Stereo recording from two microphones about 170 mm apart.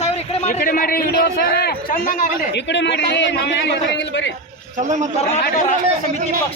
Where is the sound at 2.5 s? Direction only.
90° left.